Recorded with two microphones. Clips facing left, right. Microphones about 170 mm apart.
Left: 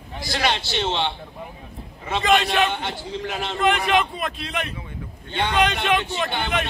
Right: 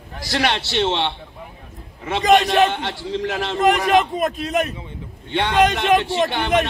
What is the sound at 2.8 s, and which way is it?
Speech, 75° right (ahead or behind).